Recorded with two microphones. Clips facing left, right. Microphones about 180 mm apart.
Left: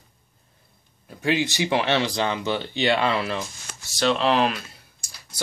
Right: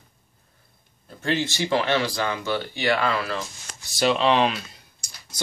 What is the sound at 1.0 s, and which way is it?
Speech, 15° left (ahead or behind).